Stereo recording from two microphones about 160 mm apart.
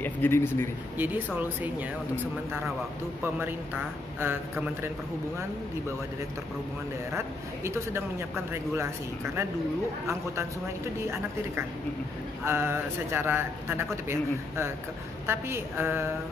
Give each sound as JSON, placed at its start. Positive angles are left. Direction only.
{"t": 0.0, "sound": "speech", "side_deg": 15}
{"t": 0.9, "sound": "a man's voice", "side_deg": -10}
{"t": 7.2, "sound": "a man's voice", "side_deg": -15}
{"t": 12.4, "sound": "a man's voice", "side_deg": -15}
{"t": 15.2, "sound": "a man's voice", "side_deg": -15}